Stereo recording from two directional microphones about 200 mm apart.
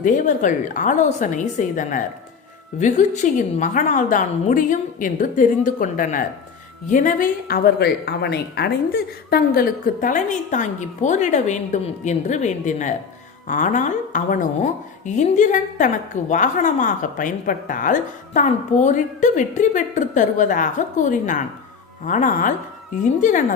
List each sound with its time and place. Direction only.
0.0 s a woman's voice: 40° left (ahead or behind)